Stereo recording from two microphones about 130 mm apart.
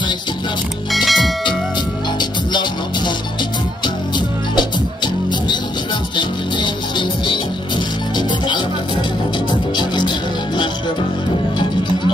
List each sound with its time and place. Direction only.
0.9 s music: centre (ahead or behind)
4.6 s music: 35° left (ahead or behind)